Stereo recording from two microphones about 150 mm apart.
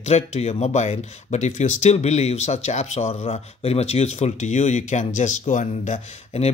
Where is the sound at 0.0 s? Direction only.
45° left (ahead or behind).